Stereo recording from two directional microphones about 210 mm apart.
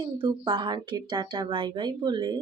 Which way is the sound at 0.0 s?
25° right (ahead or behind).